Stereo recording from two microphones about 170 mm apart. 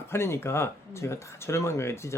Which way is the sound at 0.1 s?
15° left (ahead or behind).